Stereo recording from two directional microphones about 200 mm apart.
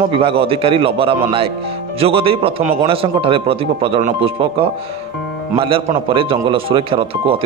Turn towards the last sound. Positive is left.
turn(degrees=-30)  # may be behind; listen again after turning